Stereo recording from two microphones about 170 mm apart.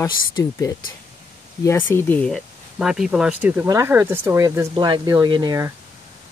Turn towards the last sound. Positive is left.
turn(degrees=-20)  # may be behind; listen again after turning